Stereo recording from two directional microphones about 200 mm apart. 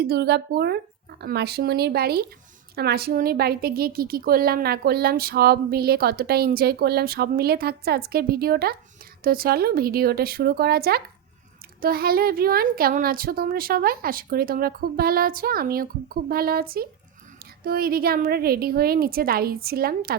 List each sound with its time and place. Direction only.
0.0 s a woman's voice: 55° right (ahead or behind)